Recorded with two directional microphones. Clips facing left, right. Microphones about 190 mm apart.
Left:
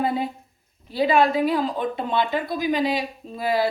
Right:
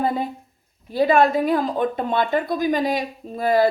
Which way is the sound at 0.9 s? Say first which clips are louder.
Right 2 dB; 50° right (ahead or behind).